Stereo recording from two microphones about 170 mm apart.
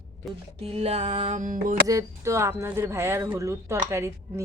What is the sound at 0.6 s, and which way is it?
Music, 35° right (ahead or behind).